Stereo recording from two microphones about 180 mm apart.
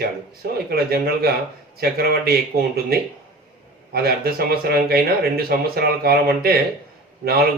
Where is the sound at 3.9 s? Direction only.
60° right (ahead or behind).